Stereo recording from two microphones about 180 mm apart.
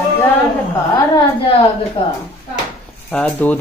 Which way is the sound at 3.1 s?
5° left (ahead or behind).